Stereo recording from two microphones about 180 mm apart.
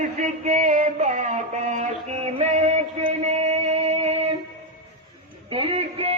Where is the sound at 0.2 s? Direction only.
45° right (ahead or behind).